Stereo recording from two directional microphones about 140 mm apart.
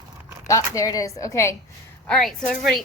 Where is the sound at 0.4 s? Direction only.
25° left (ahead or behind).